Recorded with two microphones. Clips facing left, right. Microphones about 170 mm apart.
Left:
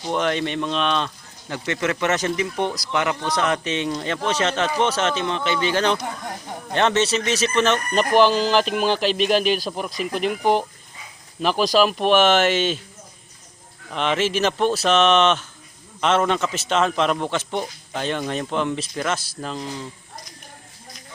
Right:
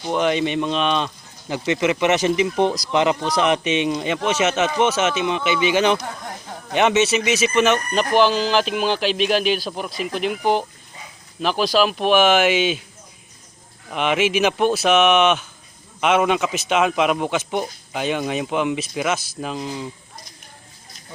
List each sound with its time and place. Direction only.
0.0 s speech: 5° right (ahead or behind); by 2.7 s 25° right (ahead or behind)
2.7 s a man's voice: 15° right (ahead or behind)
7.9 s speech: centre (ahead or behind)
13.9 s a man's voice: 10° right (ahead or behind)